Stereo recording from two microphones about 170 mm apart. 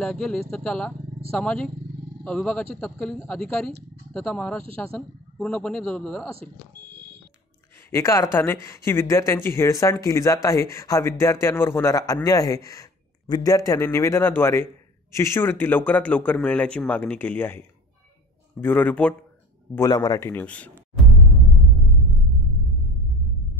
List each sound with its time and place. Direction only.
0.0 s a man's voice: centre (ahead or behind)
7.9 s speech: 15° left (ahead or behind)
19.7 s speech: 20° left (ahead or behind)